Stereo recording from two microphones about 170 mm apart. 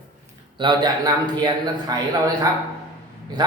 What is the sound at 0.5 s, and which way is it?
A man's voice, 25° right (ahead or behind).